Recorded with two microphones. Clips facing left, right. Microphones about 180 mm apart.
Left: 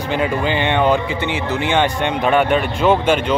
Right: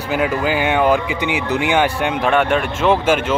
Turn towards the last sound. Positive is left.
turn(degrees=-5)  # may be behind; listen again after turning